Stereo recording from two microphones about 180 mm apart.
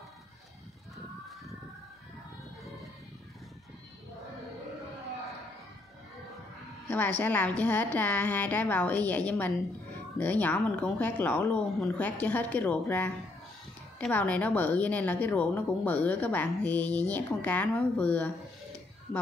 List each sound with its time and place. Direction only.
6.9 s a woman's voice: 10° left (ahead or behind)